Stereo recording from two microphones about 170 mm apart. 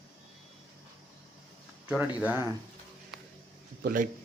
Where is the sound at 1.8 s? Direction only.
10° right (ahead or behind).